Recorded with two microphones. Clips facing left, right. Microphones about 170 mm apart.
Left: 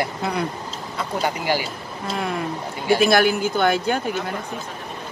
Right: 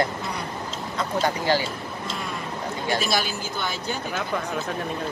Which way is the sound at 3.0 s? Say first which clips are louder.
Left 9 dB; 55° left (ahead or behind).